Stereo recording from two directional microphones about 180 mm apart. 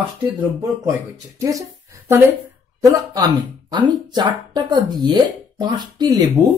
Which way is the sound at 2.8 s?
20° right (ahead or behind).